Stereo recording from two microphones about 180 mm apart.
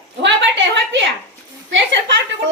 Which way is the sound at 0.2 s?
80° right.